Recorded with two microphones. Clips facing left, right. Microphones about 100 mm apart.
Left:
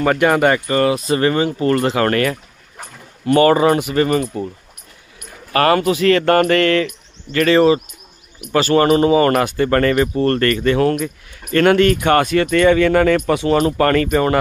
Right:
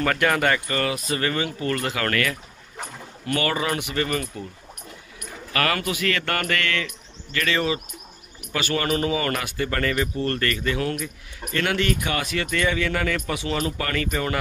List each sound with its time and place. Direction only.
0.0 s speech: 20° left (ahead or behind)
3.3 s speech: 35° left (ahead or behind)
5.5 s speech: 35° left (ahead or behind)